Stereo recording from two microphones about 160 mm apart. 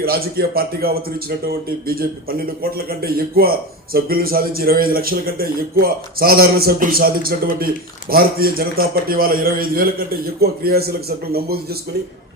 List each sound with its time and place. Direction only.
0.0 s speech: 70° right (ahead or behind)